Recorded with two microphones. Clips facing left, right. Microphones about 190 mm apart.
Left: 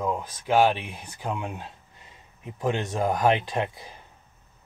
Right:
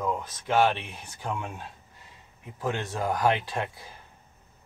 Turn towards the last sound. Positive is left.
turn(degrees=20)  # may be behind; listen again after turning